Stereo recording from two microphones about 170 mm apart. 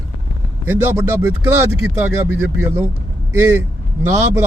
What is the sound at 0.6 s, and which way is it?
Speech, 15° right (ahead or behind).